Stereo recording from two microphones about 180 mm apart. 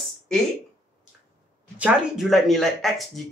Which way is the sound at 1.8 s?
5° right (ahead or behind).